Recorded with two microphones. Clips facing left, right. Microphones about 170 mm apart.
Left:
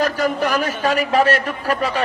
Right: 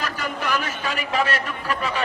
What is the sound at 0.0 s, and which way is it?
A man's voice, 40° left (ahead or behind).